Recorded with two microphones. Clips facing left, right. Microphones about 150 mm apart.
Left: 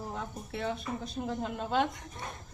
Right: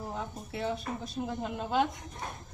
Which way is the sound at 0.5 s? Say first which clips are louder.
Right 1 dB; centre (ahead or behind).